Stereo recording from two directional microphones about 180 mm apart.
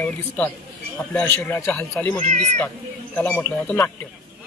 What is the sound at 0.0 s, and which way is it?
A man's voice, 10° left (ahead or behind).